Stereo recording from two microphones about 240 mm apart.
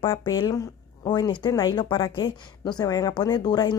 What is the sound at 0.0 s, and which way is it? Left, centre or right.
Speech, centre.